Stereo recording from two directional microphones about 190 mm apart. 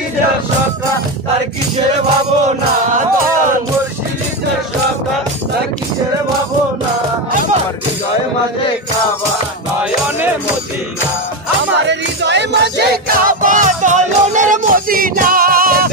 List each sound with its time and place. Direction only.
11.9 s music: 65° right (ahead or behind); by 15.9 s 50° right (ahead or behind)